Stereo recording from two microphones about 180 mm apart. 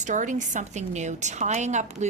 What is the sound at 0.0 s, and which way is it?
Speech, 45° right (ahead or behind).